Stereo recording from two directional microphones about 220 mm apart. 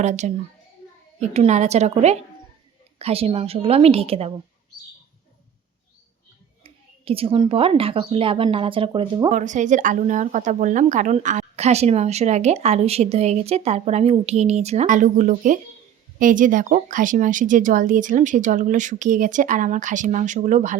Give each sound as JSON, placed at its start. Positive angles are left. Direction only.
{"t": 0.0, "sound": "a woman's voice", "side_deg": -30}
{"t": 6.6, "sound": "speech", "side_deg": -25}
{"t": 9.3, "sound": "a woman's voice", "side_deg": -35}